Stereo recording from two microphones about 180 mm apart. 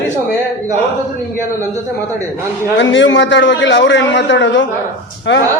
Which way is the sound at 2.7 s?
90° left.